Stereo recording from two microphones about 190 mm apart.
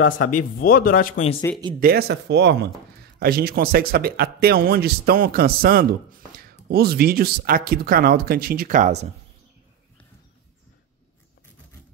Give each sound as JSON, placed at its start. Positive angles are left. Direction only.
{"t": 0.3, "sound": "speech", "side_deg": 45}
{"t": 1.8, "sound": "speech", "side_deg": -55}